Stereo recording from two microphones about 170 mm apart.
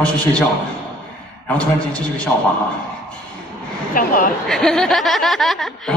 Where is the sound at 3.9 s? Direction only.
55° left (ahead or behind).